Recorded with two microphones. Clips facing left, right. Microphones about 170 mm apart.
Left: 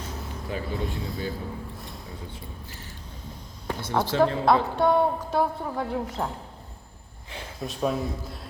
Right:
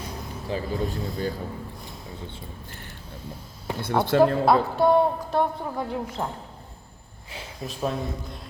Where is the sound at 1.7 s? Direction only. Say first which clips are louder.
Even; centre (ahead or behind).